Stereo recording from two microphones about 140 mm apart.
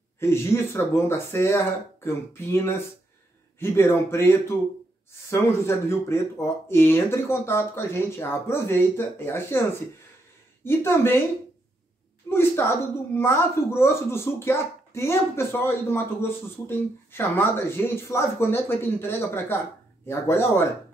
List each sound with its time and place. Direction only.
0.2 s a woman's voice: 20° left (ahead or behind)
10.6 s a woman's voice: 15° left (ahead or behind)
12.3 s a woman's voice: 15° left (ahead or behind)